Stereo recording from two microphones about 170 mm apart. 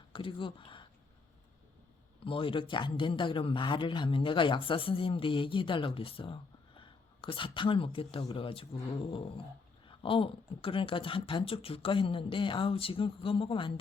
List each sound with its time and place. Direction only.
0.1 s speech: 30° left (ahead or behind)
2.2 s speech: 30° left (ahead or behind)